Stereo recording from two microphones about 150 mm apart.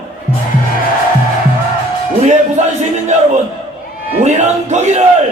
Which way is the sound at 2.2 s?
55° right (ahead or behind).